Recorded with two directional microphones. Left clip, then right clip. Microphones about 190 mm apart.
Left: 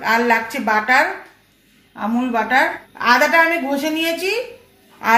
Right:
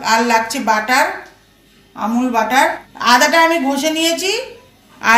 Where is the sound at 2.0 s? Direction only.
40° left (ahead or behind).